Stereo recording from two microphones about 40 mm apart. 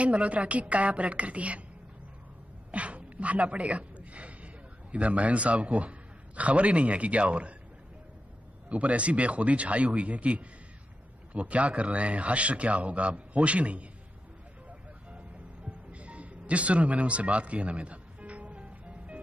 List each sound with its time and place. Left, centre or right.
0.0 s a man's voice: right
2.7 s a sound: right
4.9 s a man's voice: right
8.6 s a man's voice: right
14.7 s music: right